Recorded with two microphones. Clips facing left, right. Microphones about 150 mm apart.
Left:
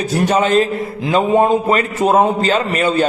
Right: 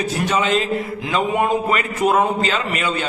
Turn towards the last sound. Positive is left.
turn(degrees=40)  # may be behind; listen again after turning